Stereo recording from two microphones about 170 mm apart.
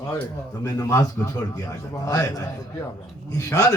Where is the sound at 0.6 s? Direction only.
20° left (ahead or behind).